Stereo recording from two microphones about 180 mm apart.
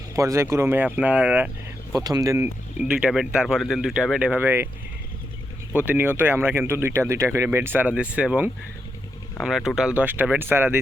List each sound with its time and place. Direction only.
0.2 s speech: 15° right (ahead or behind)
2.0 s speech: 20° right (ahead or behind)
2.8 s speech: 5° right (ahead or behind)
5.7 s speech: 10° right (ahead or behind)